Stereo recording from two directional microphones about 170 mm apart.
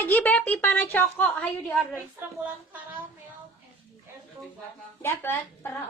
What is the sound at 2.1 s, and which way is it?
Speech, 10° right (ahead or behind).